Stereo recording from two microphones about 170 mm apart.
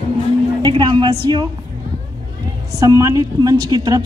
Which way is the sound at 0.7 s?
25° right (ahead or behind).